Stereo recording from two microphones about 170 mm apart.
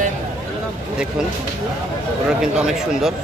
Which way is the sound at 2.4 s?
5° right (ahead or behind).